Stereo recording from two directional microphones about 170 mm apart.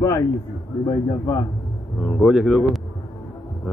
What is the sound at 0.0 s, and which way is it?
A man's voice, 20° left (ahead or behind).